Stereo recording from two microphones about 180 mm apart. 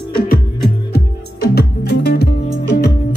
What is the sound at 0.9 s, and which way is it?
Music, 60° left (ahead or behind).